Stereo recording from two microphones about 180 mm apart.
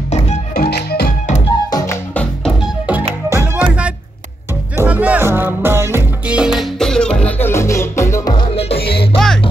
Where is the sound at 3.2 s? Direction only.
10° right (ahead or behind); by 8.4 s 20° left (ahead or behind).